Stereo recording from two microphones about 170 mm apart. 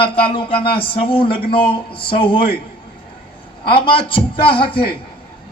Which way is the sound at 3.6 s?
30° left (ahead or behind).